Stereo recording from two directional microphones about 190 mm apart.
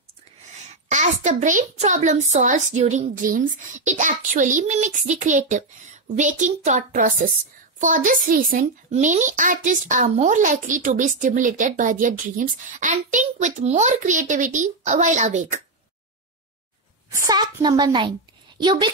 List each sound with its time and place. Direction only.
0.8 s speech: 40° right (ahead or behind)
17.1 s a woman's voice: 20° right (ahead or behind)